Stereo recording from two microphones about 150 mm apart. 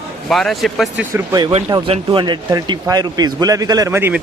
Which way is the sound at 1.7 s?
25° right (ahead or behind).